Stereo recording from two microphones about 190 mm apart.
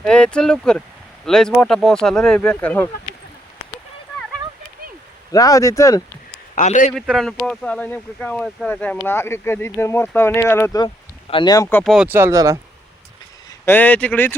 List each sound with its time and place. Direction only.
0.0 s speech: 5° left (ahead or behind)
5.3 s speech: 20° left (ahead or behind)
6.6 s a man's voice: 40° left (ahead or behind)
6.9 s speech: centre (ahead or behind); by 11.8 s 20° left (ahead or behind)
11.8 s speech: centre (ahead or behind)
13.7 s speech: 10° left (ahead or behind)